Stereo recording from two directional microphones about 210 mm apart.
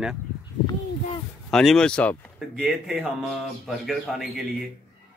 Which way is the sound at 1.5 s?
Centre (ahead or behind).